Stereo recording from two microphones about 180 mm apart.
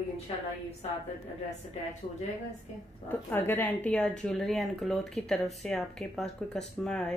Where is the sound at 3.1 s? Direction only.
10° left (ahead or behind).